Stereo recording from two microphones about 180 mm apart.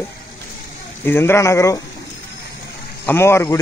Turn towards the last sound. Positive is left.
turn(degrees=15)  # may be behind; listen again after turning